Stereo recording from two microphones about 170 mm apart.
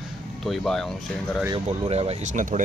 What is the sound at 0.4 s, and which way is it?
A man's voice, centre (ahead or behind).